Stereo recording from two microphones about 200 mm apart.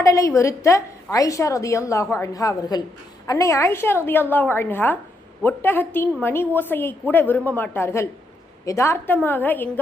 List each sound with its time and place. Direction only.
0.0 s a woman's voice: 15° left (ahead or behind)